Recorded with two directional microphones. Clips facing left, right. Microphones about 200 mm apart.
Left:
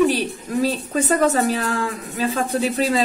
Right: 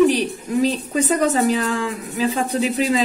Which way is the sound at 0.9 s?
15° right (ahead or behind).